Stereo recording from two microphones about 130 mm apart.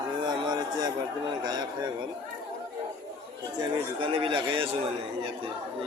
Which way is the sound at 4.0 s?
40° right (ahead or behind).